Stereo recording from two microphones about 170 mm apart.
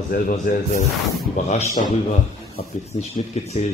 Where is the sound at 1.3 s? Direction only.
45° left (ahead or behind).